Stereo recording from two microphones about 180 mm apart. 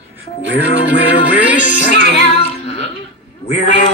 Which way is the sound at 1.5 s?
45° left (ahead or behind).